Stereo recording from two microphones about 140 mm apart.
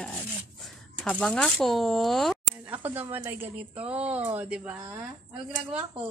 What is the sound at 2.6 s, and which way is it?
Speech, 10° right (ahead or behind).